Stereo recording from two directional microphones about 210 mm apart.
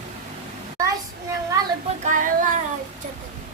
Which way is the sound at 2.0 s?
40° right (ahead or behind).